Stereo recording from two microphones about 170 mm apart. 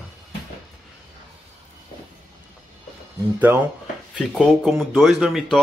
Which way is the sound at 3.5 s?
15° right (ahead or behind).